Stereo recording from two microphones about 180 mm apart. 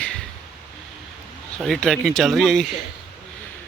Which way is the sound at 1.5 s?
Centre (ahead or behind).